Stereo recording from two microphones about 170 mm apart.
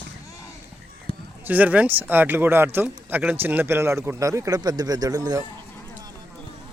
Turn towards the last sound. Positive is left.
turn(degrees=-20)  # may be behind; listen again after turning